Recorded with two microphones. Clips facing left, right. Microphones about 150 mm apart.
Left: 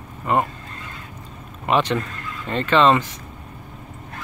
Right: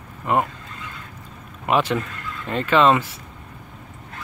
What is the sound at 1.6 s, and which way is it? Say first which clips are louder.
Speech: even; 5° right (ahead or behind).